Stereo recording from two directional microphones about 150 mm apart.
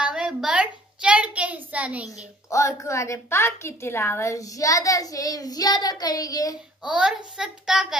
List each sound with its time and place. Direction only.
0.0 s a sound: 5° right (ahead or behind)
2.5 s a woman's voice: 20° left (ahead or behind)
6.8 s a child's voice: 5° right (ahead or behind)